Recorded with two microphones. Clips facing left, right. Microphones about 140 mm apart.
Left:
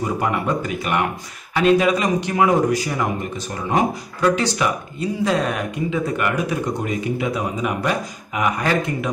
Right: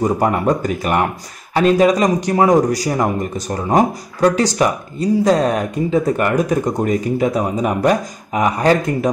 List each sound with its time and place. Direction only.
0.0 s speech: 40° right (ahead or behind)